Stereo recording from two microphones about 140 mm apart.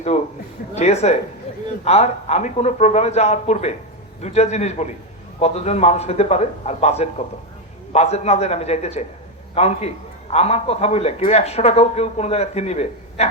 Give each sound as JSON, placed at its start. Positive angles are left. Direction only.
{"t": 0.8, "sound": "speech", "side_deg": 50}